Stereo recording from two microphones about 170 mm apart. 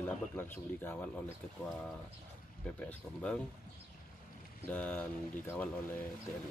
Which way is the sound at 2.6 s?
10° left (ahead or behind).